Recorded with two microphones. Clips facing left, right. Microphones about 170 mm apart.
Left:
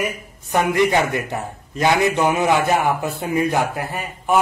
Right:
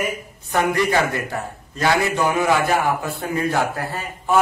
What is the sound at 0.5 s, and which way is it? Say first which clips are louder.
A man's voice: left 2 dB; 20° left (ahead or behind).